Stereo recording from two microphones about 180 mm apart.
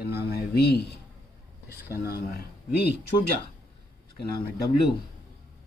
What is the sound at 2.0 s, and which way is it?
Speech, 60° left (ahead or behind).